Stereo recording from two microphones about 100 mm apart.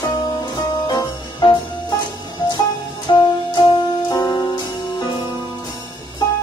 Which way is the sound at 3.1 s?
45° left (ahead or behind).